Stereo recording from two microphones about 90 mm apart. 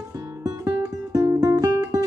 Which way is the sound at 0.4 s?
35° right (ahead or behind).